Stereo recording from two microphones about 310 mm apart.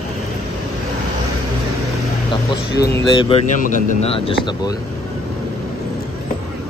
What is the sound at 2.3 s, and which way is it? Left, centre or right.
Speech, centre.